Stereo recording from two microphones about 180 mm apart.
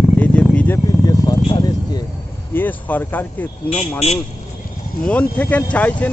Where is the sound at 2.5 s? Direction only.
10° left (ahead or behind).